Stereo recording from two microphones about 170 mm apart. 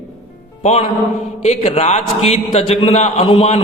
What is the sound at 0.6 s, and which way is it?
A man's voice, 40° left (ahead or behind).